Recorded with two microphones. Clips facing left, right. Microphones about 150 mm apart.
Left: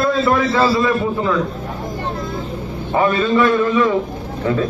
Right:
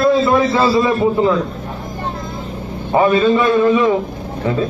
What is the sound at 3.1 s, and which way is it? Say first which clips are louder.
Speech: right 1 dB; 20° right (ahead or behind).